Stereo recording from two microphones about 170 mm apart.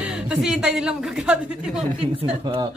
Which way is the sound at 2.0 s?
30° right (ahead or behind).